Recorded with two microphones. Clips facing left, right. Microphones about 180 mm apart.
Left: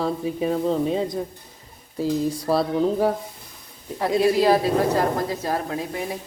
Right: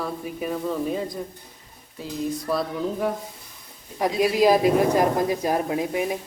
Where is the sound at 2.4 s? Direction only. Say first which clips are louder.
Left 7 dB; 30° left (ahead or behind).